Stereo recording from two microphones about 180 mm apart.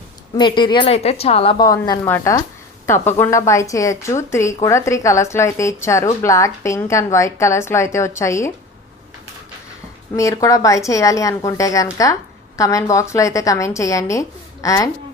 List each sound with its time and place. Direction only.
0.3 s a woman's voice: 25° left (ahead or behind)
10.2 s speech: 15° left (ahead or behind)